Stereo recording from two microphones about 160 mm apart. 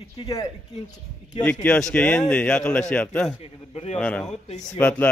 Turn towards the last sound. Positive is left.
turn(degrees=10)  # may be behind; listen again after turning